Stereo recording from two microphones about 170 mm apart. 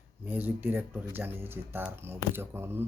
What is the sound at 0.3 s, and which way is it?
Speech, 10° right (ahead or behind).